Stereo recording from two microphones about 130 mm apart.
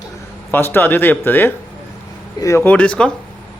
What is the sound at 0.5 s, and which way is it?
Speech, 15° left (ahead or behind).